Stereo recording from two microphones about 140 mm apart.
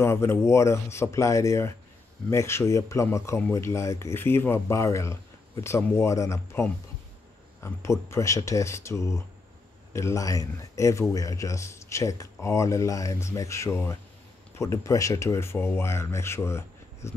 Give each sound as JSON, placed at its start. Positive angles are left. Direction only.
{"t": 0.0, "sound": "speech", "side_deg": 20}